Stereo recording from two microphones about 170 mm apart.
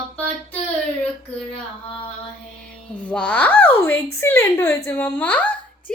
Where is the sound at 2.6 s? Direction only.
5° left (ahead or behind).